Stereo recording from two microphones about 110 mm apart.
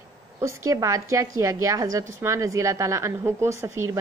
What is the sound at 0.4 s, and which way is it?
A woman's voice, 30° right (ahead or behind).